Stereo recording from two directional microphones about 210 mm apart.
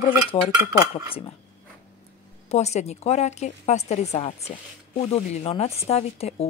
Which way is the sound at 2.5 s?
30° left (ahead or behind).